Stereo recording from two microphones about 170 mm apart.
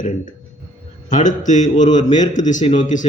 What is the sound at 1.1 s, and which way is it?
A man's voice, 45° left (ahead or behind).